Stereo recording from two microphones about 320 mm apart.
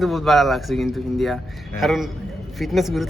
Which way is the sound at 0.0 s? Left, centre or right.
Centre.